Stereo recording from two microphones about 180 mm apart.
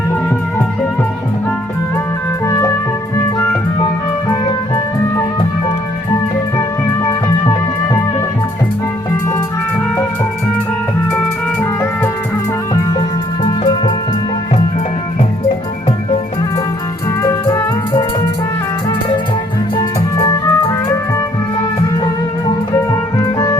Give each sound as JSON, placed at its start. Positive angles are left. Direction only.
{"t": 2.5, "sound": "music", "side_deg": 15}
{"t": 4.3, "sound": "music", "side_deg": 25}
{"t": 11.6, "sound": "music", "side_deg": 10}
{"t": 12.7, "sound": "music", "side_deg": 25}
{"t": 17.2, "sound": "music", "side_deg": 20}
{"t": 22.4, "sound": "music", "side_deg": 15}